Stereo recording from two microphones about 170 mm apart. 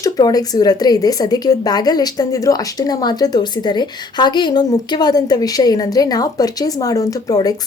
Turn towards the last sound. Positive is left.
turn(degrees=20)  # may be behind; listen again after turning